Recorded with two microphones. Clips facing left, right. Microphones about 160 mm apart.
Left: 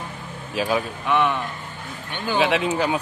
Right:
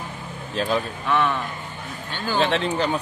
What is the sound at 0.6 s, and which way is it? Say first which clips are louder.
Speech: left 1 dB; 10° left (ahead or behind).